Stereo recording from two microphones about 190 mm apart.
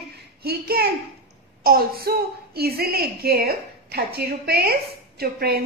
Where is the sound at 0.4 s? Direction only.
55° right (ahead or behind).